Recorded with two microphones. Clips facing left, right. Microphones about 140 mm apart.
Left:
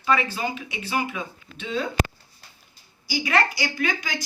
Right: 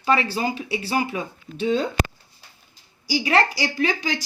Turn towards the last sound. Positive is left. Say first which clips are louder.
# right 4 dB
turn(degrees=-30)  # may be behind; listen again after turning